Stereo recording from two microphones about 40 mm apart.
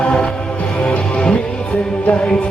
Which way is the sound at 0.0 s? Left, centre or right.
Left.